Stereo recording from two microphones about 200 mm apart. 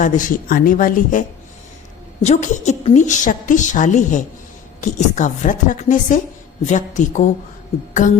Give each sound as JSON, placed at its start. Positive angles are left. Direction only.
{"t": 0.0, "sound": "a woman's voice", "side_deg": 40}
{"t": 2.2, "sound": "a woman's voice", "side_deg": 35}